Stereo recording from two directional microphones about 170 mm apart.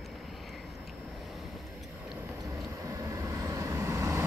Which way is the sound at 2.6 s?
20° right (ahead or behind).